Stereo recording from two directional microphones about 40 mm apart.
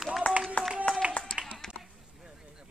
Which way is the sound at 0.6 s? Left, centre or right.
Left.